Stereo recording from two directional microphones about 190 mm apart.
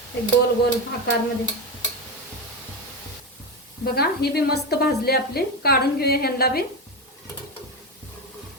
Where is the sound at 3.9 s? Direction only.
55° left (ahead or behind).